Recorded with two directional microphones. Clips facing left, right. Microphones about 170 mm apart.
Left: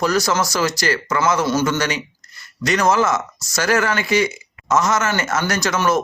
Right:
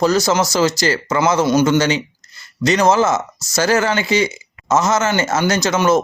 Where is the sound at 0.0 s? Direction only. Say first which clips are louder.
Right 3 dB; 25° right (ahead or behind).